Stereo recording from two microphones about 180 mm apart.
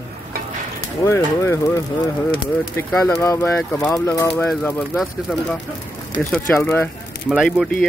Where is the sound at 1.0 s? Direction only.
15° left (ahead or behind).